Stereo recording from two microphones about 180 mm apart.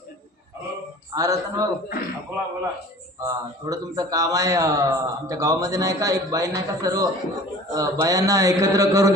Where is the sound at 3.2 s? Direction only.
20° right (ahead or behind).